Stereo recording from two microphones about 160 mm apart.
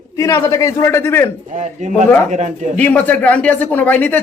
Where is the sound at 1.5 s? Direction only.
50° right (ahead or behind).